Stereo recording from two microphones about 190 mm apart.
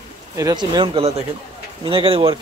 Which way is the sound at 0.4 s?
20° right (ahead or behind).